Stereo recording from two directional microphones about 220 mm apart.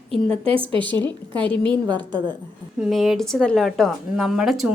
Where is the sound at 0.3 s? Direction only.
25° right (ahead or behind).